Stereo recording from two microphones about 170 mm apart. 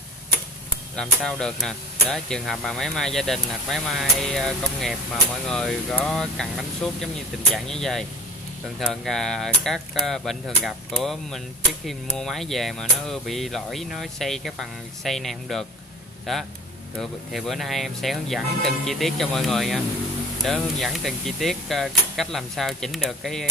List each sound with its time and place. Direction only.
0.9 s speech: 5° left (ahead or behind)